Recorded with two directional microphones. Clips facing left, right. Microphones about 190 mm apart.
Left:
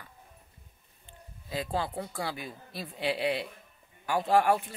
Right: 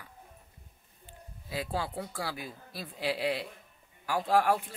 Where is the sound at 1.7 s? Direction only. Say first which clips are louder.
Left 3 dB; 10° right (ahead or behind).